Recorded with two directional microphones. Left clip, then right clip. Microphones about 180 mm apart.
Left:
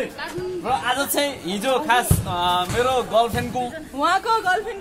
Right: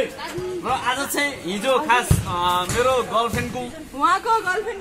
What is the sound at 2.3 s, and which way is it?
Music, 55° left (ahead or behind).